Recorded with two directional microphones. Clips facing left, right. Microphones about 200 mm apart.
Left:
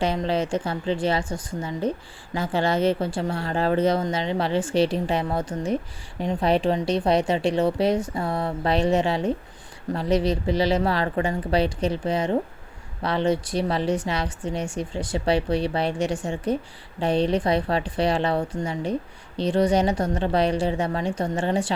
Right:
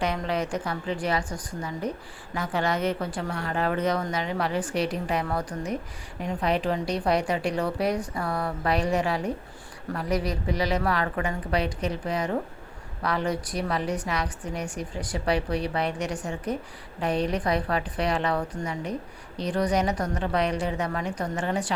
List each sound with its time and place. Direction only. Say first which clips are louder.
0.0 s a woman's voice: left 4 dB; 30° left (ahead or behind)